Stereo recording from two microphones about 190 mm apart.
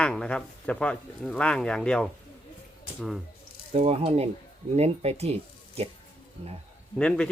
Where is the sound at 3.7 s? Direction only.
30° right (ahead or behind).